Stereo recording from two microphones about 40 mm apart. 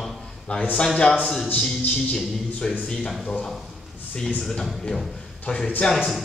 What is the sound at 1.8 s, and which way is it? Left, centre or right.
A man's voice, left.